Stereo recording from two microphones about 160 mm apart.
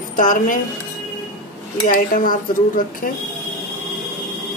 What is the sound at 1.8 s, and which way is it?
A woman's voice, 60° left (ahead or behind).